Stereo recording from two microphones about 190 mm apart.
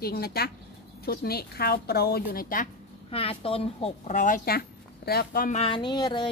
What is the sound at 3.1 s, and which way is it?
Speech, 30° left (ahead or behind).